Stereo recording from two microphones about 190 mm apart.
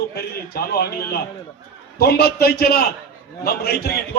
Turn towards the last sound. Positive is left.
turn(degrees=55)  # may be behind; listen again after turning